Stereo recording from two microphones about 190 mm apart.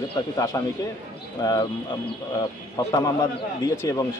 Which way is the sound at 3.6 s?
20° left (ahead or behind).